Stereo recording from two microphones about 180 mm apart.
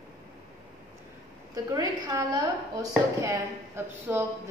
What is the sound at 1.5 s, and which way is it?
A woman's voice, 20° right (ahead or behind).